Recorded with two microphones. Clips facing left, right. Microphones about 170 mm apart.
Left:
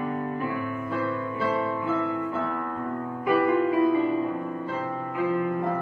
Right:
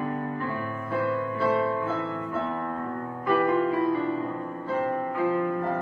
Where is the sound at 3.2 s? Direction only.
15° left (ahead or behind).